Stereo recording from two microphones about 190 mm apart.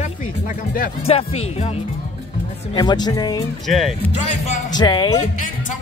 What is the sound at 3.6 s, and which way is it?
Speech, centre (ahead or behind).